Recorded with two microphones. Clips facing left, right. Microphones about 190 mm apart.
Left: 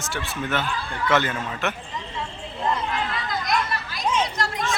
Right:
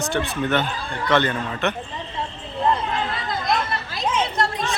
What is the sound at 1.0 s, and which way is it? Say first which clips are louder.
Speech: right 2 dB; 5° left (ahead or behind).